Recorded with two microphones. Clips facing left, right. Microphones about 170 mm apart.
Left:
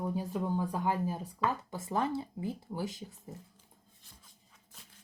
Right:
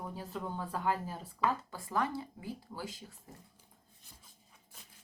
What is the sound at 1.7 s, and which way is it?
Speech, 25° left (ahead or behind).